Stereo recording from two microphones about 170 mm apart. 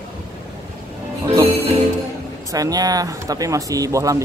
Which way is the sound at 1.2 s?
20° right (ahead or behind).